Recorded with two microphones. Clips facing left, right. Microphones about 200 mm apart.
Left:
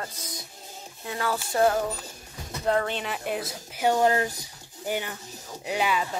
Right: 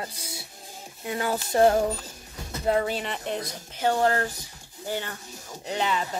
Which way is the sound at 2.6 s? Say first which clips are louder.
Right 1 dB; 10° right (ahead or behind).